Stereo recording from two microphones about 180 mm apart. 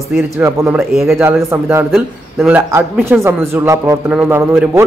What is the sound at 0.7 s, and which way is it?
Speech, centre (ahead or behind).